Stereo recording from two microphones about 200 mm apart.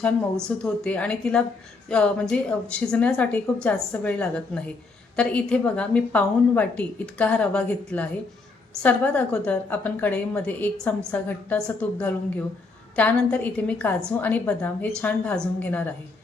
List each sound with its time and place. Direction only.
0.4 s a woman's voice: 5° left (ahead or behind)